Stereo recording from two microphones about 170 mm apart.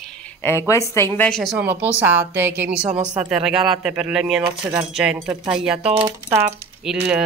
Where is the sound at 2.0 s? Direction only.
10° right (ahead or behind).